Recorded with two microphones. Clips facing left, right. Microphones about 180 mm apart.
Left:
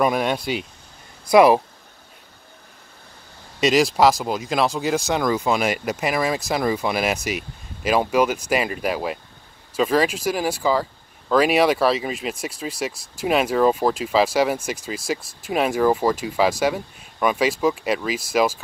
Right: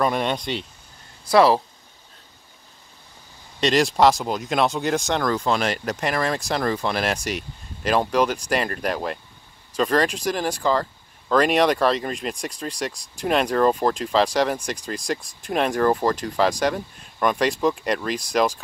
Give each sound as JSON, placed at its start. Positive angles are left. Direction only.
{"t": 0.0, "sound": "speech", "side_deg": 5}
{"t": 3.6, "sound": "speech", "side_deg": 5}